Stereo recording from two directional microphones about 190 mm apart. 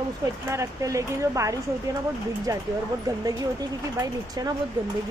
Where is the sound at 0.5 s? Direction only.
15° right (ahead or behind).